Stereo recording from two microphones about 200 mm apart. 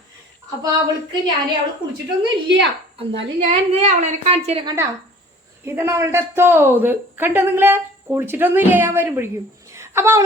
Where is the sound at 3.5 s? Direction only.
30° right (ahead or behind).